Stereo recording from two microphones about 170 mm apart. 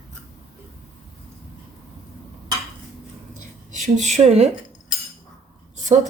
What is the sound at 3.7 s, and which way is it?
Speech, 45° right (ahead or behind).